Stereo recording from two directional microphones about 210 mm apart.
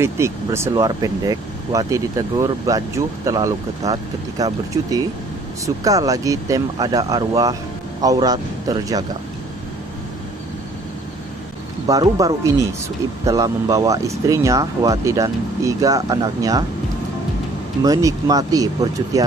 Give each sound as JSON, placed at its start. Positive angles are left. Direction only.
{"t": 0.0, "sound": "speech", "side_deg": -10}
{"t": 11.9, "sound": "speech", "side_deg": -15}
{"t": 17.8, "sound": "speech", "side_deg": -15}